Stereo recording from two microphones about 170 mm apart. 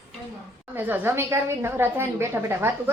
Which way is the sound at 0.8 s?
15° right (ahead or behind).